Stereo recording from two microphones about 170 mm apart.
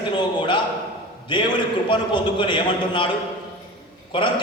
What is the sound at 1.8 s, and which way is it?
A man's voice, 30° left (ahead or behind).